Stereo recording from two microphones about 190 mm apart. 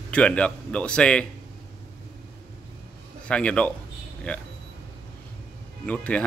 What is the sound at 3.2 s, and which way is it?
Speech, 5° left (ahead or behind).